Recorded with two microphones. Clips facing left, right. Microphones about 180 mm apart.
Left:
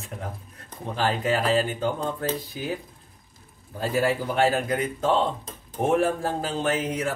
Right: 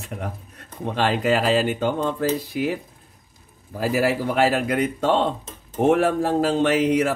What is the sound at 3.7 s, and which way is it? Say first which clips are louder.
Speech: right 3 dB; 85° right.